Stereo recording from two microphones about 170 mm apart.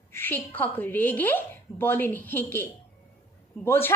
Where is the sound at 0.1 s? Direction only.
10° left (ahead or behind).